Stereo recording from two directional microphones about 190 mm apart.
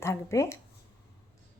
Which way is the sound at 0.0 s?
15° left (ahead or behind).